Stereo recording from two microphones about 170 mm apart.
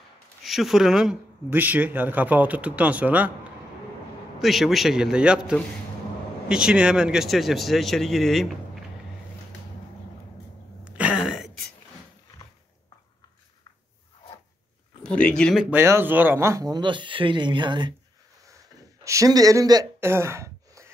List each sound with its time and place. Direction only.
0.4 s speech: centre (ahead or behind)
4.4 s speech: centre (ahead or behind)
10.8 s throat clearing: 5° right (ahead or behind)
15.0 s speech: 5° left (ahead or behind)
15.6 s speech: 15° right (ahead or behind)
19.0 s speech: 20° right (ahead or behind)